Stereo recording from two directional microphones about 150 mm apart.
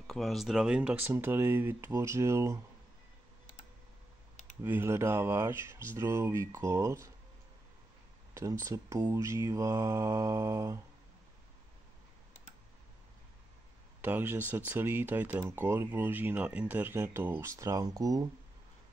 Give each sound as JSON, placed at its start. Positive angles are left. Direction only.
{"t": 0.0, "sound": "speech", "side_deg": 0}
{"t": 4.6, "sound": "speech", "side_deg": -15}
{"t": 8.4, "sound": "mantra", "side_deg": -20}
{"t": 14.0, "sound": "speech", "side_deg": -15}